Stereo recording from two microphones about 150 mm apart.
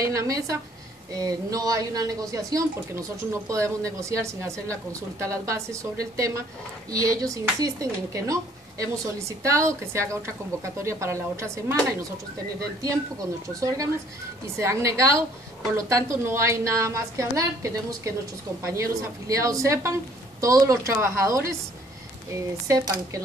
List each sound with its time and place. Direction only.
0.0 s speech: 20° right (ahead or behind)
13.6 s speech: 20° right (ahead or behind)